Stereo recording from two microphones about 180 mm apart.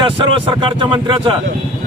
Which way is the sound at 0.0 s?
30° right (ahead or behind).